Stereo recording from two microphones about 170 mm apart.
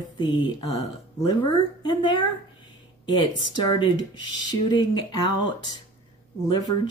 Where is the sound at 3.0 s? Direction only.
25° left (ahead or behind).